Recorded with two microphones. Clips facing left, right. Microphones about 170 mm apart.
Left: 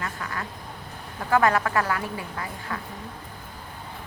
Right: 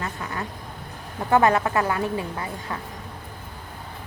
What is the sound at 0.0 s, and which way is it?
Duck, 25° right (ahead or behind).